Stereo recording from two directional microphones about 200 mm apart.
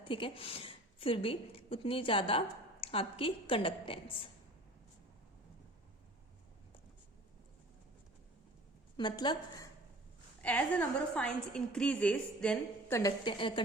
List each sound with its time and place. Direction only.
0.0 s a woman's voice: 25° left (ahead or behind)
9.0 s a woman's voice: 25° left (ahead or behind)
10.4 s a woman's voice: 5° left (ahead or behind)
13.0 s a woman's voice: 20° left (ahead or behind)